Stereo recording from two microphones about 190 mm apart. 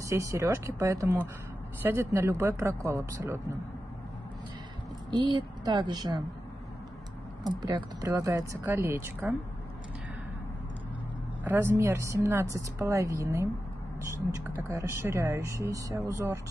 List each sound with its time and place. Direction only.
0.0 s a woman's voice: 15° right (ahead or behind)
5.1 s speech: 25° right (ahead or behind)
7.4 s a woman's voice: 20° right (ahead or behind)
11.4 s a woman's voice: 10° right (ahead or behind)
14.7 s a woman's voice: 15° right (ahead or behind)